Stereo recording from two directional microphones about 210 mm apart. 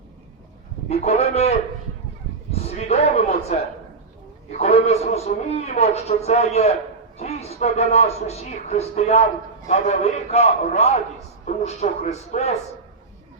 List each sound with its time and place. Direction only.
0.9 s a man's voice: 30° left (ahead or behind)
2.5 s a sound: 30° left (ahead or behind)
4.5 s a man's voice: 30° left (ahead or behind)